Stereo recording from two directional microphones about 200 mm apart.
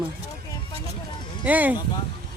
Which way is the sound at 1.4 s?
10° right (ahead or behind).